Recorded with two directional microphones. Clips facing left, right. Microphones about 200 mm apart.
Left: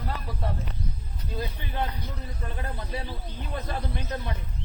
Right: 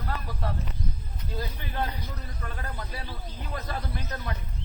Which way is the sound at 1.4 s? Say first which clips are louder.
Left 1 dB; 20° left (ahead or behind).